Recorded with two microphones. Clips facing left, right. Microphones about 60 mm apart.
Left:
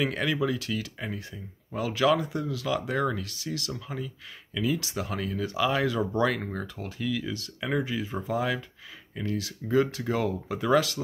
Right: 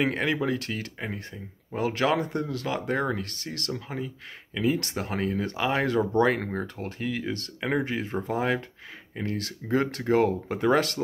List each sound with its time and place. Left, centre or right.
0.0 s speech: right
0.9 s speech: right
1.8 s speech: right
2.1 s speech: right